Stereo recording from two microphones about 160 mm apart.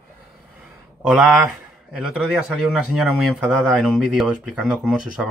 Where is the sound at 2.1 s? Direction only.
5° right (ahead or behind).